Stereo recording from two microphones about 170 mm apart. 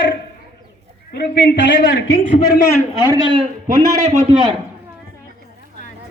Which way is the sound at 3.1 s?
30° right (ahead or behind).